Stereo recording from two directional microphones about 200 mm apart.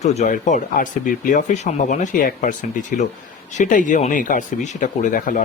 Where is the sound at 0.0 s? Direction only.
35° left (ahead or behind).